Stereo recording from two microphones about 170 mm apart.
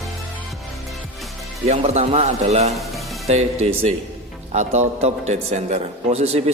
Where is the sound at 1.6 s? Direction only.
40° right (ahead or behind).